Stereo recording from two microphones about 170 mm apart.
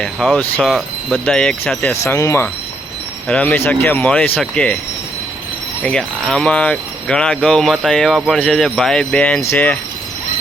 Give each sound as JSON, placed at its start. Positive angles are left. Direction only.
{"t": 0.0, "sound": "speech", "side_deg": 0}
{"t": 2.1, "sound": "speech", "side_deg": 15}
{"t": 5.8, "sound": "speech", "side_deg": 5}